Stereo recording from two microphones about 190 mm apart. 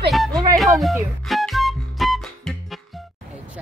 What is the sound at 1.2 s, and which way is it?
Music, centre (ahead or behind).